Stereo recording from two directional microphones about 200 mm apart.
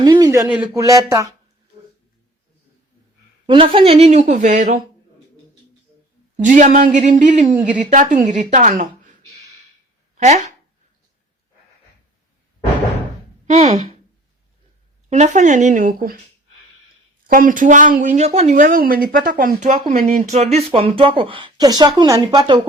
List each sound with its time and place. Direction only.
0.0 s a sound: 20° right (ahead or behind)
0.4 s speech: 10° right (ahead or behind)
3.4 s speech: 25° right (ahead or behind)
6.4 s speech: 40° right (ahead or behind)
10.2 s speech: 35° right (ahead or behind)
15.1 s speech: 35° right (ahead or behind)
17.2 s speech: 45° right (ahead or behind)
19.8 s speech: 30° right (ahead or behind)